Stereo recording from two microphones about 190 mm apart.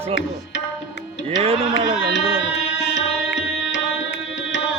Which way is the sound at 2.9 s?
75° left (ahead or behind).